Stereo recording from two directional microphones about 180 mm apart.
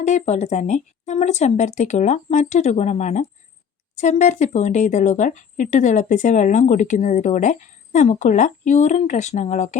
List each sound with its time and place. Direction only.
0.0 s speech: 40° left (ahead or behind)